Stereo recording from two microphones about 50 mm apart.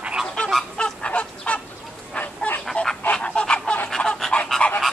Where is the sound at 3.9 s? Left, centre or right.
Centre.